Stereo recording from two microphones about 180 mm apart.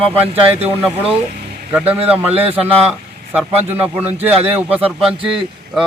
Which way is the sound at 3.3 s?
5° right (ahead or behind).